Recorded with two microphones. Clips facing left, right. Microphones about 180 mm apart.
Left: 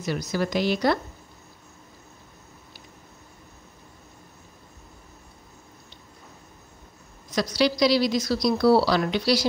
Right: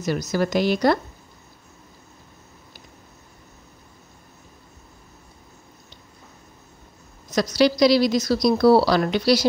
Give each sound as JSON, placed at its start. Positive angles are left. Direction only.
{"t": 0.0, "sound": "a woman's voice", "side_deg": -40}
{"t": 7.2, "sound": "a woman's voice", "side_deg": -45}